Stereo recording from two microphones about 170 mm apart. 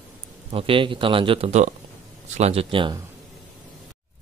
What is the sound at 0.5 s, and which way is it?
Speech, 30° right (ahead or behind).